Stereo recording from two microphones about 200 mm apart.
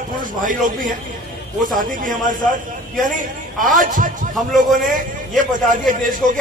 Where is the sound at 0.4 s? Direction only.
40° right (ahead or behind).